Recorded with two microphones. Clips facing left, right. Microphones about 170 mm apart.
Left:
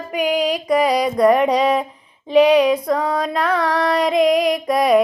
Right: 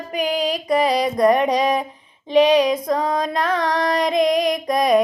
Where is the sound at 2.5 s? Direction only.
20° right (ahead or behind).